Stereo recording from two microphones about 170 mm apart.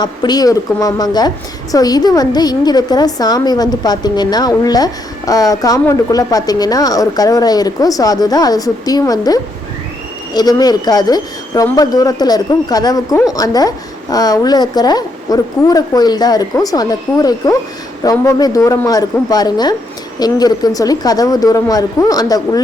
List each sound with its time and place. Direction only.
0.0 s a woman's voice: 25° left (ahead or behind)